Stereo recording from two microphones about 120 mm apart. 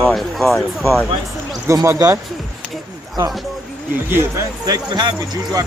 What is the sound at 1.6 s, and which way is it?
Music, 25° right (ahead or behind).